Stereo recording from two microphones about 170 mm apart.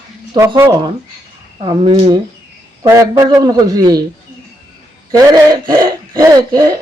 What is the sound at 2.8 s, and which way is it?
Speech, 20° right (ahead or behind).